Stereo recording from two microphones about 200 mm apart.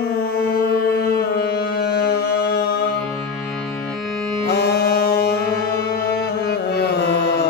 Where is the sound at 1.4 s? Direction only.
50° left (ahead or behind).